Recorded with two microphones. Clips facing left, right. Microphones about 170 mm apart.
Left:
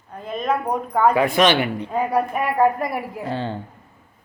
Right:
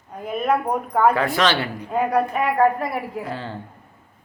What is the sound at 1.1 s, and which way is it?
A man's voice, 15° left (ahead or behind).